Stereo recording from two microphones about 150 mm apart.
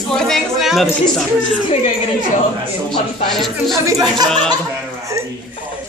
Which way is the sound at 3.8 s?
25° right (ahead or behind).